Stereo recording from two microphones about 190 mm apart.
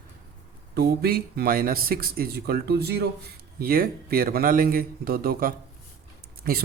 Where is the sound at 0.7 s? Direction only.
55° right (ahead or behind).